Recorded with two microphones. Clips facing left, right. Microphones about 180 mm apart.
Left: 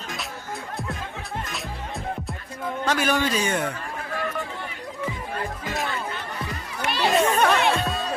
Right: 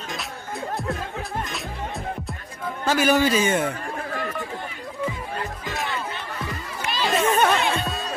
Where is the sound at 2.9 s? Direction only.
5° right (ahead or behind).